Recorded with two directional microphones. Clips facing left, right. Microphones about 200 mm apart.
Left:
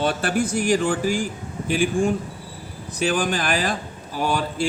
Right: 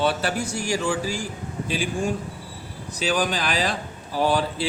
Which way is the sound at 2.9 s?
50° left (ahead or behind).